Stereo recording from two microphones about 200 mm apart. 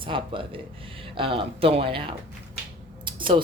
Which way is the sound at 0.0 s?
25° right (ahead or behind).